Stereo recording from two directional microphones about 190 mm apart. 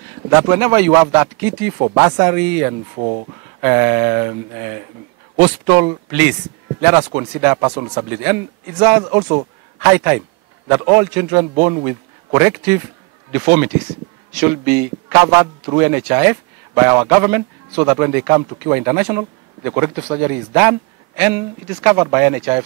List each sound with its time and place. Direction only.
0.3 s speech: 20° right (ahead or behind)
3.0 s speech: 35° right (ahead or behind)
3.6 s speech: 15° right (ahead or behind)
9.8 s speech: 15° right (ahead or behind)
11.3 s a man's voice: 25° right (ahead or behind)